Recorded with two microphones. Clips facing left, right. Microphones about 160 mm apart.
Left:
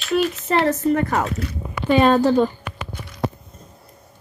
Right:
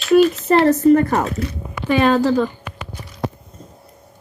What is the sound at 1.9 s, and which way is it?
Speech, 15° left (ahead or behind).